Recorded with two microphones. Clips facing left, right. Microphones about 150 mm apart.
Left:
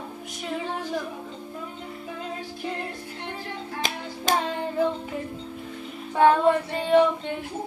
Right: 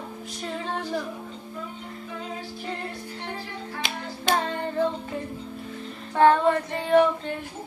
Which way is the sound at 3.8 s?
40° left (ahead or behind).